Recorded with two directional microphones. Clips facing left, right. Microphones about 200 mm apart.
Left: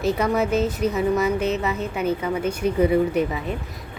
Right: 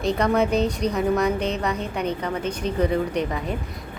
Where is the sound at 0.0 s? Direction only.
5° left (ahead or behind).